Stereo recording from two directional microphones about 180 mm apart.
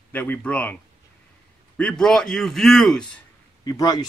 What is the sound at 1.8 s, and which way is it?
A man's voice, 5° left (ahead or behind).